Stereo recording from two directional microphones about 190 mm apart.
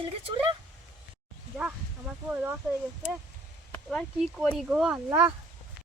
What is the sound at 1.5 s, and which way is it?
Speech, 5° right (ahead or behind).